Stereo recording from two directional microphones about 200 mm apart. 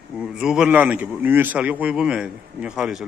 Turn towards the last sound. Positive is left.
turn(degrees=-5)  # may be behind; listen again after turning